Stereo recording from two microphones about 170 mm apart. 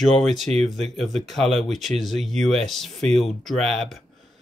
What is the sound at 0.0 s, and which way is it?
Speech, centre (ahead or behind).